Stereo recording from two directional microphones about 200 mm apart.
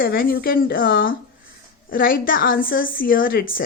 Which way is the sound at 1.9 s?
45° left (ahead or behind).